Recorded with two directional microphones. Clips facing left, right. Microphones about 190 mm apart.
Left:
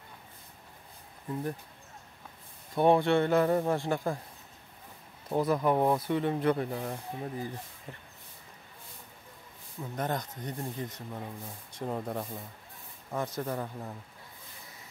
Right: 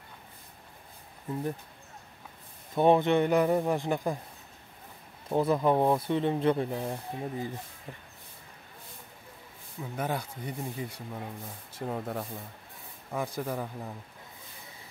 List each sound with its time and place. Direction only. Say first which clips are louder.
2.7 s speech: right 1 dB; 20° right (ahead or behind)
5.3 s speech: right 2 dB; 25° right (ahead or behind)
9.8 s speech: even; 10° right (ahead or behind)